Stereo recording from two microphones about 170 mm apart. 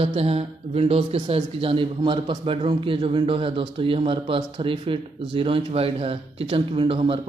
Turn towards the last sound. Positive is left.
turn(degrees=-35)  # may be behind; listen again after turning